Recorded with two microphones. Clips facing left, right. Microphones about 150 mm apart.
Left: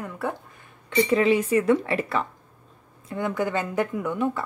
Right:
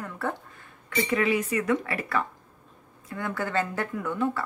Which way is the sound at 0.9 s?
30° left (ahead or behind).